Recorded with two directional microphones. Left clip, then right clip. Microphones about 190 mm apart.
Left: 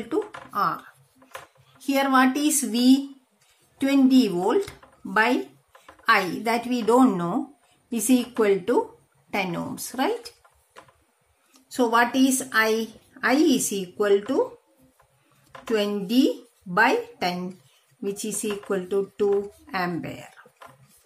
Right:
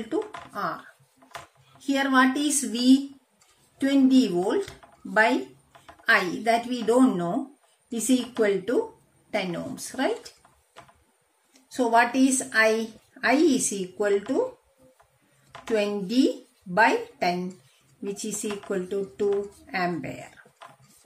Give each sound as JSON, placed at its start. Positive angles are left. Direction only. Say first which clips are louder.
{"t": 0.1, "sound": "a sound", "louder": "left 3 dB", "side_deg": 45}
{"t": 1.9, "sound": "a woman's voice", "louder": "left 2 dB", "side_deg": 45}
{"t": 11.7, "sound": "a woman's voice", "louder": "even", "side_deg": 45}
{"t": 15.7, "sound": "a woman's voice", "louder": "left 1 dB", "side_deg": 45}